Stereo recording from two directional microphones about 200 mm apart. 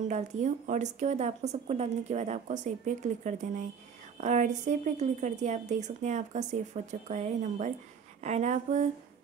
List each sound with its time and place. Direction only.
0.1 s a woman's voice: 35° right (ahead or behind)